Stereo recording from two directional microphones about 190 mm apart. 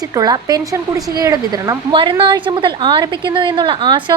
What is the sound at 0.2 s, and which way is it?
A woman's voice, 20° right (ahead or behind).